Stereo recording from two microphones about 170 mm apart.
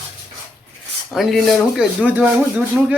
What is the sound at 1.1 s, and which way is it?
Speech, centre (ahead or behind).